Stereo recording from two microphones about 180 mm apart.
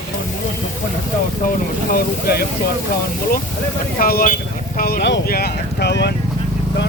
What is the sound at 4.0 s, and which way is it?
Speech, 55° left (ahead or behind).